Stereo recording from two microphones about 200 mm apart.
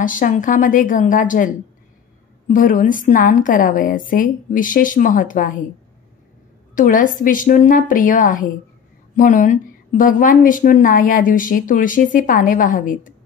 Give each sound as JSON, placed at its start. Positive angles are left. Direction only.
{"t": 0.0, "sound": "a woman's voice", "side_deg": 40}
{"t": 6.7, "sound": "a woman's voice", "side_deg": 40}